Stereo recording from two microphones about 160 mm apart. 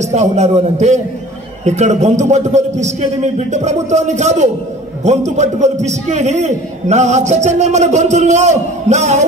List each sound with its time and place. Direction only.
0.0 s a man's voice: 45° right (ahead or behind)